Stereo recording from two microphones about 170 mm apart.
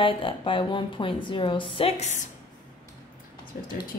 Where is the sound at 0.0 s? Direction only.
30° left (ahead or behind).